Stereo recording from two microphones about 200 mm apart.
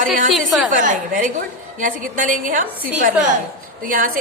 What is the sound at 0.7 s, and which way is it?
A woman's voice, 40° right (ahead or behind).